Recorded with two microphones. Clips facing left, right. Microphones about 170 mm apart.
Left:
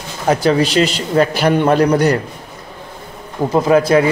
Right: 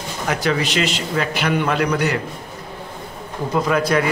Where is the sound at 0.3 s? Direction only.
35° left (ahead or behind).